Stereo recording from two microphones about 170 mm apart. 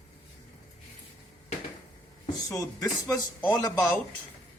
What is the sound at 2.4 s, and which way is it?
Speech, 20° left (ahead or behind).